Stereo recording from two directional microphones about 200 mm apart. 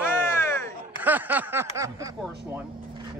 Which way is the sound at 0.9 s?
10° right (ahead or behind).